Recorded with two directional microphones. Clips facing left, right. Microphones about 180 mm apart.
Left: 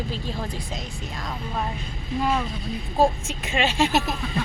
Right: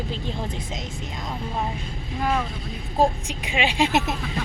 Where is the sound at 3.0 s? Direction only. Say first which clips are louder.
Even; 15° right (ahead or behind).